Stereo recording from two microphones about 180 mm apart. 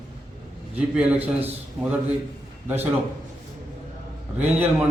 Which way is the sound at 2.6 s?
10° right (ahead or behind).